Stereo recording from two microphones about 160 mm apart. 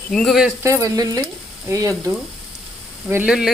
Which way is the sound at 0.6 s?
20° right (ahead or behind).